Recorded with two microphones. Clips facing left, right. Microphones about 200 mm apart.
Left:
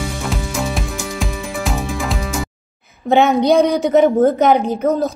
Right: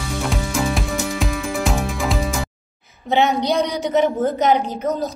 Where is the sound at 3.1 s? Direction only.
50° left (ahead or behind).